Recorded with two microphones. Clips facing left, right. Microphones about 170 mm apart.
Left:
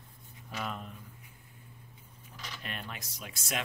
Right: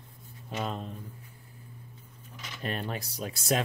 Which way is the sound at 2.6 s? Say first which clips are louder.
Right 10 dB; 40° right (ahead or behind).